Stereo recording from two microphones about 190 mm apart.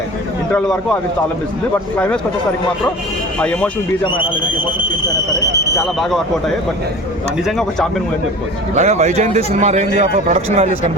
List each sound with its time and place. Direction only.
3.3 s speech: 5° left (ahead or behind)
6.0 s speech: centre (ahead or behind)
7.4 s speech: centre (ahead or behind)
8.7 s a man's voice: 35° right (ahead or behind)